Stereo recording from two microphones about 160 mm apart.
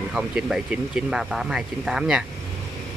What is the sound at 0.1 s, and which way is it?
Speech, 5° right (ahead or behind).